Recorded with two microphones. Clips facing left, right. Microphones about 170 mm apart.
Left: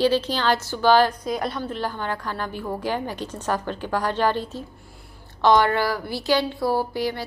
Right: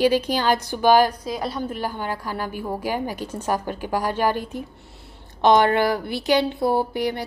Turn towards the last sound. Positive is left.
turn(degrees=-20)  # may be behind; listen again after turning